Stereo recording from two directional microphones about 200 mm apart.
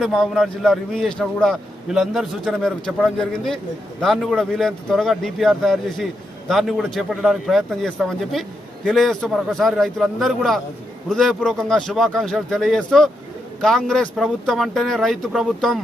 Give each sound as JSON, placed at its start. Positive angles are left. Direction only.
{"t": 0.0, "sound": "speech", "side_deg": 0}